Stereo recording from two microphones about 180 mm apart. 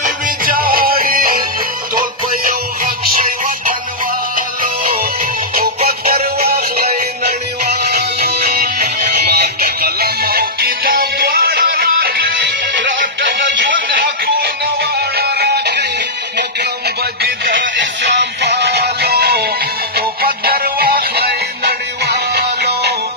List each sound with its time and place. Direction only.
0.0 s music: 55° right (ahead or behind)
5.9 s music: 60° right (ahead or behind); by 13.7 s 75° right (ahead or behind)
13.7 s music: 55° right (ahead or behind)
17.2 s music: 50° right (ahead or behind)
17.7 s music: 75° right (ahead or behind)